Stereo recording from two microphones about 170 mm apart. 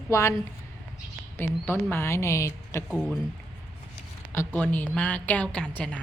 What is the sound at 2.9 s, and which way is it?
Speech, 5° left (ahead or behind).